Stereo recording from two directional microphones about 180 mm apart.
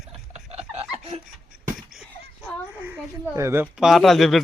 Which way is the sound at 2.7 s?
10° right (ahead or behind).